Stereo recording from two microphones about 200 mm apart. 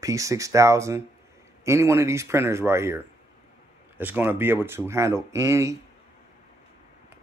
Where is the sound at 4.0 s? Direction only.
10° right (ahead or behind).